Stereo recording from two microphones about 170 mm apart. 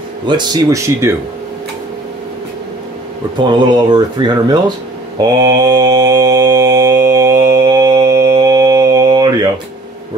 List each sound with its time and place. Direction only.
0.3 s speech: 25° right (ahead or behind)
3.3 s speech: 25° right (ahead or behind)
5.2 s mantra: 25° right (ahead or behind)